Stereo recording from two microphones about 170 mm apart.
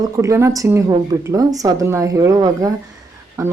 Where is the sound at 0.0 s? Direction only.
20° right (ahead or behind).